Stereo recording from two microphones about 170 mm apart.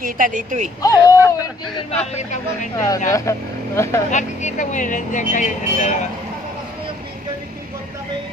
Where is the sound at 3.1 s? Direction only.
15° left (ahead or behind).